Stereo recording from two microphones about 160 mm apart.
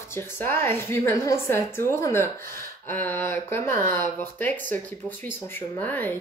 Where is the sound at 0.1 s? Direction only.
15° left (ahead or behind).